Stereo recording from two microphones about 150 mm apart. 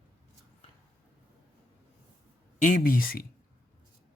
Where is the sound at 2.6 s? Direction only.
65° left (ahead or behind).